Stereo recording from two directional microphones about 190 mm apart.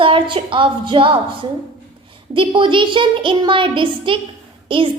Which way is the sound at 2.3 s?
25° right (ahead or behind).